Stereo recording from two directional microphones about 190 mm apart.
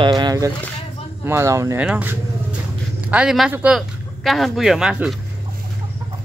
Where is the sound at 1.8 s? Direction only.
10° right (ahead or behind).